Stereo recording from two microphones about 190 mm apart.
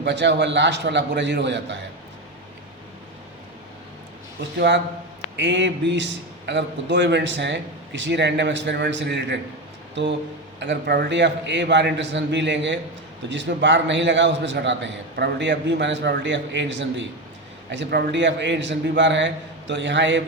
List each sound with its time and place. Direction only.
0.0 s a man's voice: 65° right (ahead or behind)
4.5 s a man's voice: 65° right (ahead or behind)